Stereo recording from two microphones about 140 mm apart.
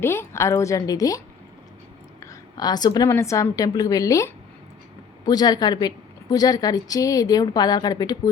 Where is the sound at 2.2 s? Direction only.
30° left (ahead or behind).